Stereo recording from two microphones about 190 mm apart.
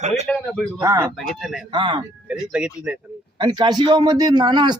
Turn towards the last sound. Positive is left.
turn(degrees=-25)  # may be behind; listen again after turning